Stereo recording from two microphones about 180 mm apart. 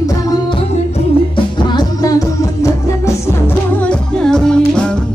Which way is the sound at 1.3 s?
25° left (ahead or behind).